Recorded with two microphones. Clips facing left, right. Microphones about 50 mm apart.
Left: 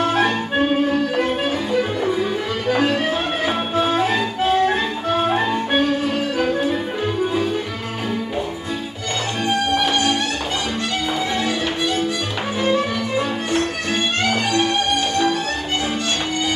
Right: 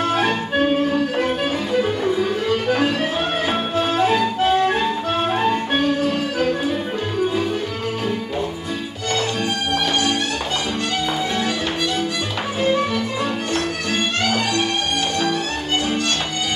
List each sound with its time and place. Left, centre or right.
3.4 s music: centre
14.2 s music: left